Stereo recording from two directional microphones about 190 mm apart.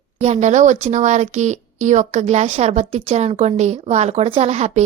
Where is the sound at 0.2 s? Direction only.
35° right (ahead or behind).